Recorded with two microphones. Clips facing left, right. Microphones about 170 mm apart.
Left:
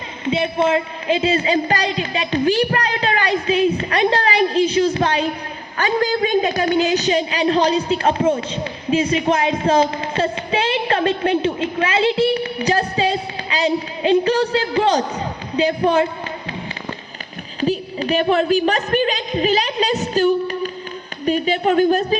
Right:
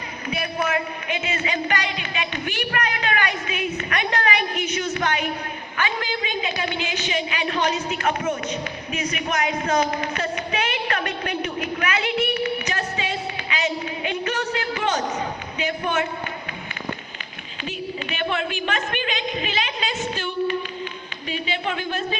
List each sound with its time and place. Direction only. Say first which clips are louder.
0.3 s a man's voice: left 8 dB; 25° left (ahead or behind)
17.6 s a man's voice: left 10 dB; 35° left (ahead or behind)